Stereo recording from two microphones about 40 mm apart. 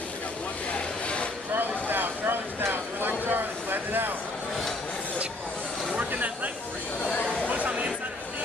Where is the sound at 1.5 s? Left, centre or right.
Right.